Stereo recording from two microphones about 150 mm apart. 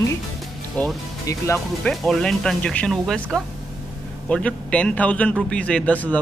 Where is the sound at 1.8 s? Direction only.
5° left (ahead or behind).